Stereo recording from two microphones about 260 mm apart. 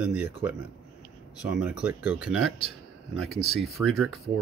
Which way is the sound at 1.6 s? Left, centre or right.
Centre.